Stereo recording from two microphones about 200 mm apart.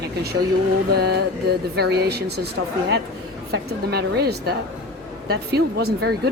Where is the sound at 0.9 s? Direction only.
55° right (ahead or behind).